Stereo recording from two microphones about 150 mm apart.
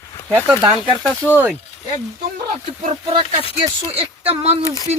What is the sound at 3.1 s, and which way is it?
Speech, 40° right (ahead or behind).